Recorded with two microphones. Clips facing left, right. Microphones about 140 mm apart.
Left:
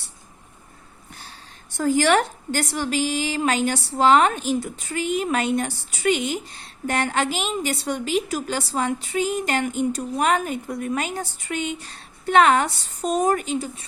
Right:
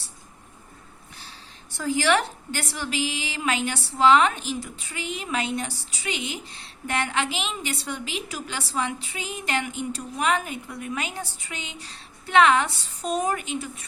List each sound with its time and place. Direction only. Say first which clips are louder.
1.7 s a woman's voice: left 4 dB; 45° left (ahead or behind)